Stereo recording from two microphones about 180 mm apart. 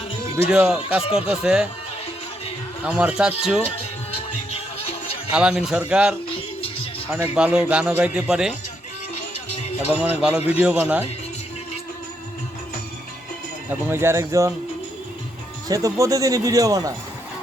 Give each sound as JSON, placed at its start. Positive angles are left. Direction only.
{"t": 0.5, "sound": "speech", "side_deg": -5}
{"t": 2.8, "sound": "speech", "side_deg": -5}
{"t": 3.6, "sound": "music", "side_deg": 35}
{"t": 5.3, "sound": "speech", "side_deg": -5}
{"t": 7.3, "sound": "speech", "side_deg": -5}
{"t": 9.9, "sound": "speech", "side_deg": -10}
{"t": 13.7, "sound": "speech", "side_deg": -15}
{"t": 15.7, "sound": "speech", "side_deg": -20}